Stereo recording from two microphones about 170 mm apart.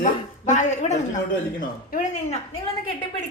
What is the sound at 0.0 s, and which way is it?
Speech, 45° left (ahead or behind).